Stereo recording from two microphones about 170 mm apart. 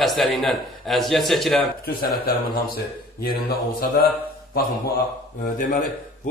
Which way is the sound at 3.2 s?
65° left (ahead or behind).